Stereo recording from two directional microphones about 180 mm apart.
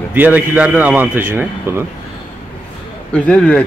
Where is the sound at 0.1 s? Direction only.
10° right (ahead or behind).